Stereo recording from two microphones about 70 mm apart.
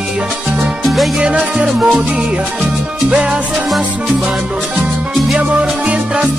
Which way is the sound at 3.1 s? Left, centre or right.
Centre.